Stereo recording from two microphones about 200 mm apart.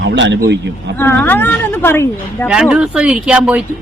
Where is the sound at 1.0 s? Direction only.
10° left (ahead or behind).